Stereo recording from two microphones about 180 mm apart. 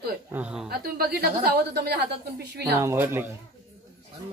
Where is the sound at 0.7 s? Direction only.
60° right (ahead or behind).